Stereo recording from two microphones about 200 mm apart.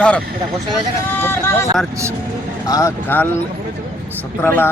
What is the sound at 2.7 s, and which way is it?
Speech, 15° left (ahead or behind).